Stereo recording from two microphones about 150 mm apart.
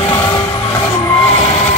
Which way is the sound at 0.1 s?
15° left (ahead or behind).